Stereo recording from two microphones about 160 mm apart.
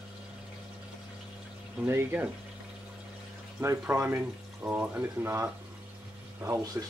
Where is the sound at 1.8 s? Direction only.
15° right (ahead or behind).